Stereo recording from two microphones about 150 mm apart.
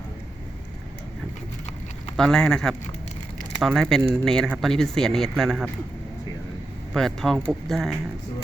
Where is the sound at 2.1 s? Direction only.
5° left (ahead or behind).